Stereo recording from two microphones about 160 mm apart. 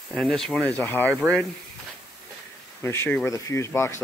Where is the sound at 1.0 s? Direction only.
15° right (ahead or behind).